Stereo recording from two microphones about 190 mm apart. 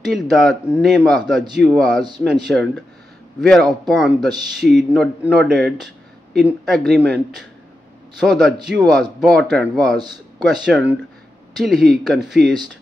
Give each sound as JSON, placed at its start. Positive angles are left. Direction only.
{"t": 0.0, "sound": "speech", "side_deg": 0}
{"t": 8.2, "sound": "speech", "side_deg": 0}
{"t": 9.9, "sound": "a man's voice", "side_deg": -20}
{"t": 10.4, "sound": "speech", "side_deg": -5}